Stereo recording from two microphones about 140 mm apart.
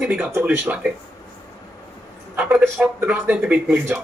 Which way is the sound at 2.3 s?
10° right (ahead or behind).